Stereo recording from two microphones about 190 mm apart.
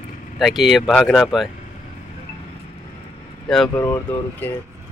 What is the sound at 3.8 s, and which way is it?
Speech, 15° left (ahead or behind).